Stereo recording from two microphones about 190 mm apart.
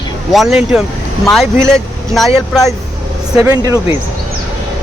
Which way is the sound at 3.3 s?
20° right (ahead or behind).